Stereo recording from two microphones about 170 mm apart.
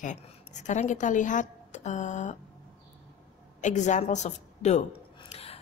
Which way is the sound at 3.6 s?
45° left (ahead or behind).